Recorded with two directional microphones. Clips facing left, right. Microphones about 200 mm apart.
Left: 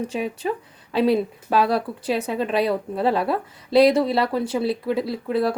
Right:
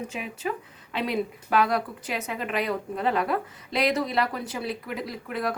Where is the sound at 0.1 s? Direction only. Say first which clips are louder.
Left 6 dB; 30° left (ahead or behind).